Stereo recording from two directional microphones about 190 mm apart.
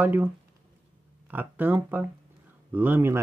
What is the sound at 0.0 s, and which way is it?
Speech, 10° right (ahead or behind).